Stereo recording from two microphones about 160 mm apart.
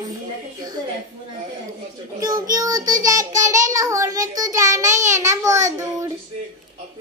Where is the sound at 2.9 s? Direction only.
20° right (ahead or behind).